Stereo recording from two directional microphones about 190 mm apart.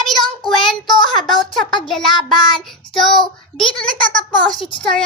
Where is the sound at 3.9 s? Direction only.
25° left (ahead or behind).